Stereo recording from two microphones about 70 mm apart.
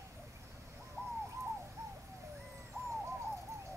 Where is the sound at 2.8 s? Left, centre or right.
Right.